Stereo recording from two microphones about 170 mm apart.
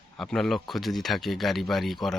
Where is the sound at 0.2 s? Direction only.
Centre (ahead or behind).